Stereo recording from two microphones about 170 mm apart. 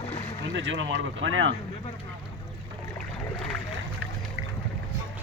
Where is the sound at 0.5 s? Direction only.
90° right.